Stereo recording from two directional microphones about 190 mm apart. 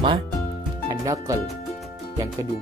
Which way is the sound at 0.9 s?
20° right (ahead or behind).